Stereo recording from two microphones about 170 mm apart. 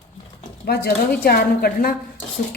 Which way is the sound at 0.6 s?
65° left (ahead or behind).